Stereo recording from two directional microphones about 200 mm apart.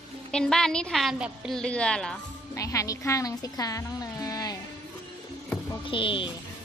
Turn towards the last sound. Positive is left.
turn(degrees=25)  # may be behind; listen again after turning